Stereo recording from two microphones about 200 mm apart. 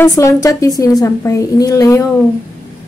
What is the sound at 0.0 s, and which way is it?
Speech, 15° left (ahead or behind).